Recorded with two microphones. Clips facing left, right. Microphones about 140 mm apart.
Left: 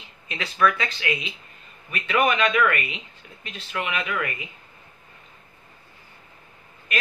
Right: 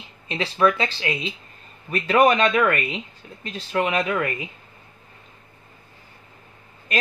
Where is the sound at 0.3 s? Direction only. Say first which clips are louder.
Right 3 dB; 30° right (ahead or behind).